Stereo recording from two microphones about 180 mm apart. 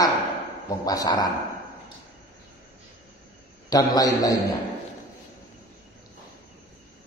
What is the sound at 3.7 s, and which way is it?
Speech, 20° left (ahead or behind).